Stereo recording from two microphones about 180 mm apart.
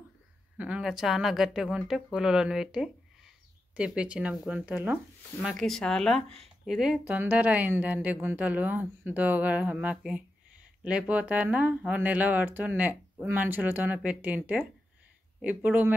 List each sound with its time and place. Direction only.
0.6 s speech: 5° right (ahead or behind)